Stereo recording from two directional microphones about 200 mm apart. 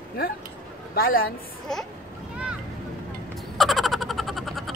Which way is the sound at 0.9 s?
45° left (ahead or behind).